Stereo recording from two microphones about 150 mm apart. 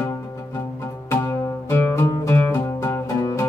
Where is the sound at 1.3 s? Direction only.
15° left (ahead or behind).